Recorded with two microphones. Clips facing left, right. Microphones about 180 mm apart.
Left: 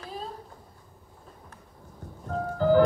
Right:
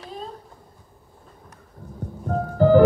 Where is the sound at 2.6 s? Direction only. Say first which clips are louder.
Right 6 dB; 60° right (ahead or behind).